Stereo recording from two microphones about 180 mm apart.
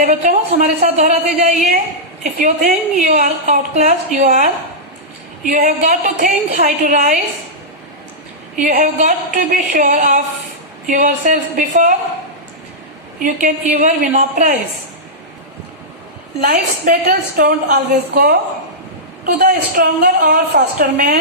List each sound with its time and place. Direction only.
0.0 s a woman's voice: 45° right (ahead or behind)
5.5 s a woman's voice: 45° right (ahead or behind)
8.5 s a woman's voice: 45° right (ahead or behind)
13.2 s a woman's voice: 45° right (ahead or behind)
16.4 s a woman's voice: 55° right (ahead or behind)